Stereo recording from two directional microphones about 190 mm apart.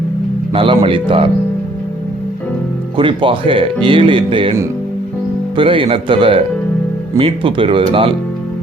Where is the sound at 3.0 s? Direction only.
25° right (ahead or behind).